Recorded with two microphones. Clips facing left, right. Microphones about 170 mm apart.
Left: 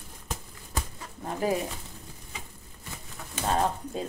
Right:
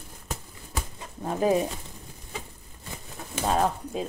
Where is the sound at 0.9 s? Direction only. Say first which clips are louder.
Right 4 dB; 20° right (ahead or behind).